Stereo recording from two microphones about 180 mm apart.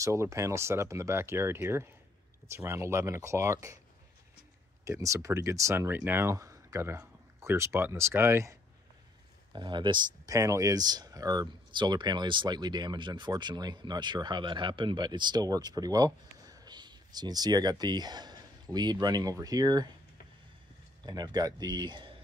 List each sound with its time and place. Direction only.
0.0 s speech: 15° right (ahead or behind)
4.8 s speech: 15° right (ahead or behind)
21.0 s speech: 20° right (ahead or behind)